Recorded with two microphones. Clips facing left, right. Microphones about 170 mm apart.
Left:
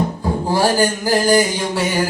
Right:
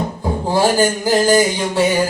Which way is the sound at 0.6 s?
20° right (ahead or behind).